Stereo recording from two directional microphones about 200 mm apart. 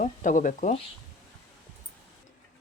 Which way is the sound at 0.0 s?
40° left (ahead or behind).